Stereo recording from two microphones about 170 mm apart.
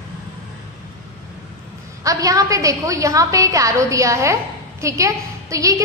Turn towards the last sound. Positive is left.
turn(degrees=-20)  # may be behind; listen again after turning